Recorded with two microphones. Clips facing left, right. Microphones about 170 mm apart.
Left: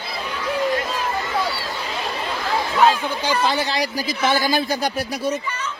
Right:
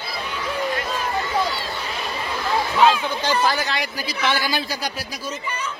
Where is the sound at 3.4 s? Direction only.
25° left (ahead or behind); by 5.4 s 65° left (ahead or behind).